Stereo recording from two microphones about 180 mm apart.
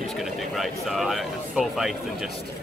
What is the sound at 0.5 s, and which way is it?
Speech, centre (ahead or behind).